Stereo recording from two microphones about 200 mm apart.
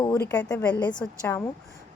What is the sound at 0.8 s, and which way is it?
Speech, 20° left (ahead or behind).